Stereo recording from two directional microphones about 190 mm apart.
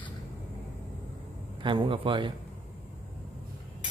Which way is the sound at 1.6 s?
25° right (ahead or behind).